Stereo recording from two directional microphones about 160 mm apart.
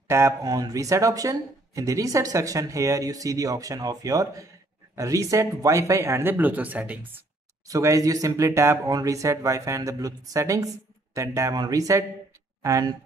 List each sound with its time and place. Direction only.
0.1 s speech: 20° right (ahead or behind)
7.6 s speech: 20° right (ahead or behind)